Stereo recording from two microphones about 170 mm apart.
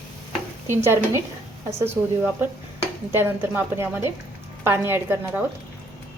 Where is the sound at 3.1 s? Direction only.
10° right (ahead or behind).